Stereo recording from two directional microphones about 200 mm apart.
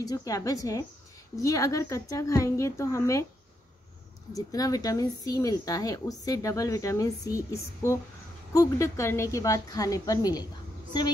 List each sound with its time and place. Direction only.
0.0 s speech: 15° left (ahead or behind)
4.5 s speech: 15° left (ahead or behind)